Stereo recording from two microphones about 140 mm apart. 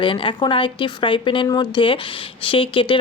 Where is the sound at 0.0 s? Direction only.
35° left (ahead or behind).